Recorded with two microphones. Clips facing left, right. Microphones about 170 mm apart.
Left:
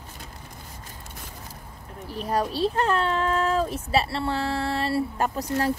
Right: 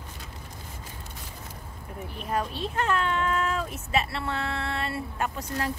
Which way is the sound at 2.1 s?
35° left (ahead or behind).